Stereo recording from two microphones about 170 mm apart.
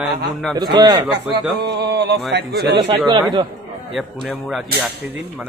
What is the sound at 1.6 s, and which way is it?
Speech, 75° right (ahead or behind).